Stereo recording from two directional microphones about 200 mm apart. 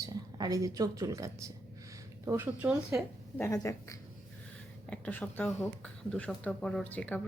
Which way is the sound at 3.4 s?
15° left (ahead or behind).